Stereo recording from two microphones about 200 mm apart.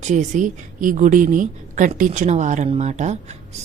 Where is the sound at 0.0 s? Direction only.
35° right (ahead or behind).